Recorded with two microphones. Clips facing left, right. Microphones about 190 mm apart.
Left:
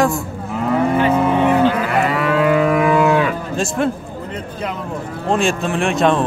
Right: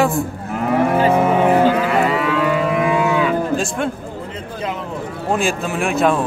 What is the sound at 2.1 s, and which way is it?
Livestock, 50° left (ahead or behind).